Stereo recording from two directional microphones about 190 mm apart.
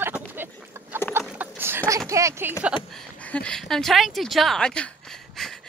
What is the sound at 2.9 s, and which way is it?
Speech, 5° left (ahead or behind).